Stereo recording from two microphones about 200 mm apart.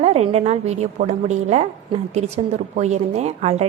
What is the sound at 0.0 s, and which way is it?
A woman's voice, 30° right (ahead or behind).